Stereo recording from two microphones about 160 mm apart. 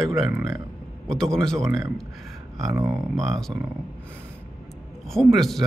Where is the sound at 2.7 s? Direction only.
20° right (ahead or behind).